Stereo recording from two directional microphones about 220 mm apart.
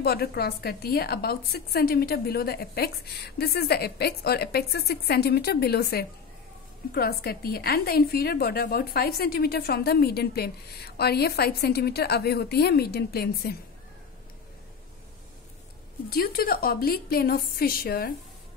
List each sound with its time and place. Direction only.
0.0 s a woman's voice: 45° left (ahead or behind)
16.1 s a woman's voice: 45° left (ahead or behind)